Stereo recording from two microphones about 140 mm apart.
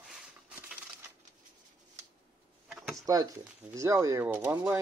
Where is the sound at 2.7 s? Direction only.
Centre (ahead or behind).